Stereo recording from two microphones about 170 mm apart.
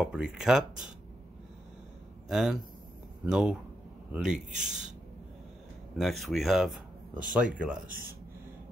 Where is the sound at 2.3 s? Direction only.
5° right (ahead or behind).